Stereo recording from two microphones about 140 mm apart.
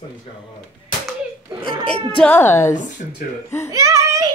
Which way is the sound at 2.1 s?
15° left (ahead or behind).